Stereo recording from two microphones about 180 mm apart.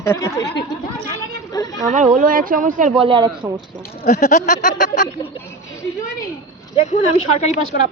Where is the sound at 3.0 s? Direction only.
25° right (ahead or behind).